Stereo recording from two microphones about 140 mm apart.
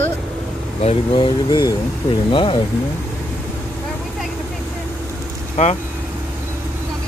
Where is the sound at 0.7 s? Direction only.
50° left (ahead or behind).